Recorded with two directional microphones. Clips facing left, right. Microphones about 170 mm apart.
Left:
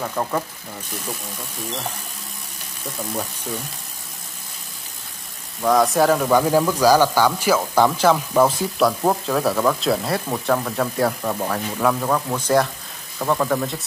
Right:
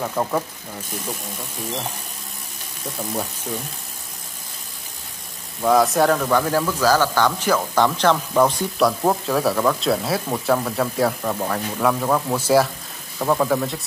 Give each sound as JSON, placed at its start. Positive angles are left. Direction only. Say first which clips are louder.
{"t": 0.0, "sound": "speech", "louder": "right 1 dB", "side_deg": -5}
{"t": 5.6, "sound": "speech", "louder": "even", "side_deg": -5}